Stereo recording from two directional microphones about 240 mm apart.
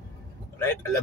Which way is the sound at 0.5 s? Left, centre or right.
Centre.